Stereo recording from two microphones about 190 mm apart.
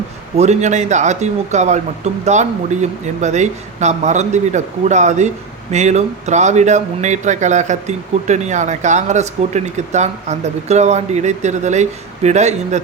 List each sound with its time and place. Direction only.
0.3 s speech: 35° right (ahead or behind)